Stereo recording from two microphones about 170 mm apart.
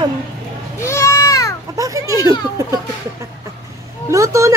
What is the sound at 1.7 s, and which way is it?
Speech, 20° right (ahead or behind).